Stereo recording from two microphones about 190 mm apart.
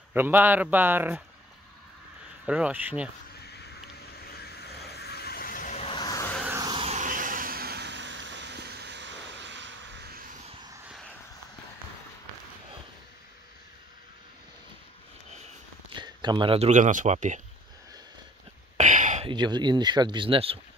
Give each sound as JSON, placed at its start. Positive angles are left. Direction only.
{"t": 0.1, "sound": "speech", "side_deg": -10}
{"t": 2.4, "sound": "speech", "side_deg": -5}
{"t": 3.6, "sound": "vehicle", "side_deg": 55}
{"t": 5.8, "sound": "a sound", "side_deg": 25}
{"t": 6.4, "sound": "a sound", "side_deg": -15}
{"t": 6.7, "sound": "vehicle", "side_deg": -35}
{"t": 15.9, "sound": "speech", "side_deg": -25}
{"t": 18.8, "sound": "a sound", "side_deg": -40}
{"t": 19.2, "sound": "speech", "side_deg": -25}